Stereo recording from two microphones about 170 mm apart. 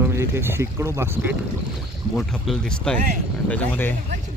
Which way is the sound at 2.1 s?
Centre (ahead or behind).